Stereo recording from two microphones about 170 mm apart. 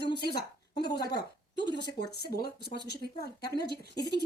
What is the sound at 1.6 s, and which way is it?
Speech, 90° left.